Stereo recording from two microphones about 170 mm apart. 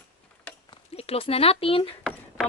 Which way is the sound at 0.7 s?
35° left (ahead or behind).